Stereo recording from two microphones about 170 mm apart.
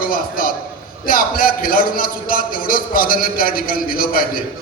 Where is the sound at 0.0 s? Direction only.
55° left (ahead or behind).